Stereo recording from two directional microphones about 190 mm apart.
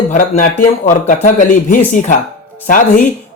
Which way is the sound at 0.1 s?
45° left (ahead or behind).